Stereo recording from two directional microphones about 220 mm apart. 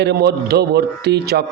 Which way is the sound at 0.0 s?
50° right (ahead or behind).